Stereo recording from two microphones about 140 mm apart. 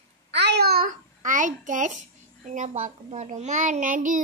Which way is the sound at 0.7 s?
80° right.